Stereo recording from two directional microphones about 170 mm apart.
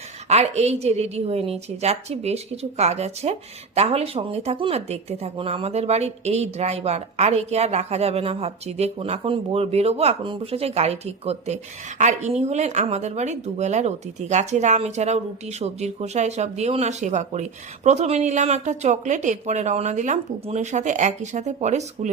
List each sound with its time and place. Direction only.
0.3 s speech: 40° right (ahead or behind)